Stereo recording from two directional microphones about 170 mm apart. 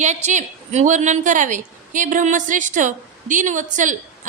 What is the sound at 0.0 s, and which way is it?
A woman's voice, 45° right (ahead or behind).